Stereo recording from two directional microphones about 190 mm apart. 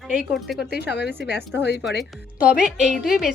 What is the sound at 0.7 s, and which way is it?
Speech, 60° left (ahead or behind).